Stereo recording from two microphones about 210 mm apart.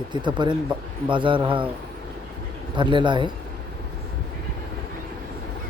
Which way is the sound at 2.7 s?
20° right (ahead or behind).